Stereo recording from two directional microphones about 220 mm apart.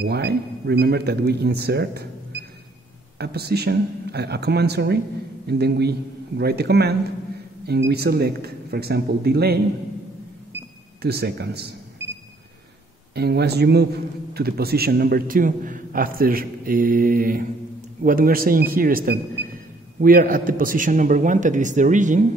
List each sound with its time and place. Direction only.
0.0 s speech: 45° right (ahead or behind)
3.2 s speech: 45° right (ahead or behind)
11.0 s speech: 45° right (ahead or behind)
13.1 s a man's voice: 45° right (ahead or behind)